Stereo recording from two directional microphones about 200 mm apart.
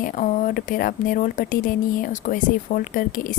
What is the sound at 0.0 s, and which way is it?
Speech, 40° left (ahead or behind).